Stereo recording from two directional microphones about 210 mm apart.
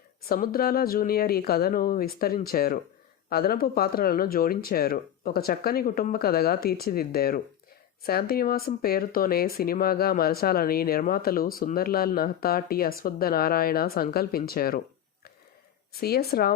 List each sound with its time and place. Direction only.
0.3 s speech: 45° left (ahead or behind)
15.9 s speech: 45° left (ahead or behind)